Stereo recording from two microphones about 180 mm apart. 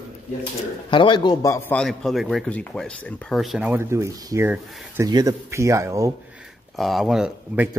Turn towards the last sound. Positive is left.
turn(degrees=-5)  # may be behind; listen again after turning